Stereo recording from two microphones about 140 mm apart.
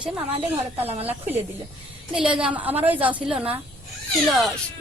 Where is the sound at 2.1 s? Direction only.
5° right (ahead or behind).